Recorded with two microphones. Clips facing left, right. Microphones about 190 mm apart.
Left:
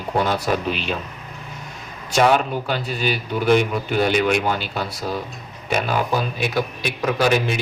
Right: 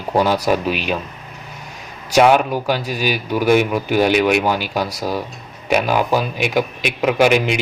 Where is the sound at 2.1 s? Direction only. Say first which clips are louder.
Right 4 dB; 10° right (ahead or behind).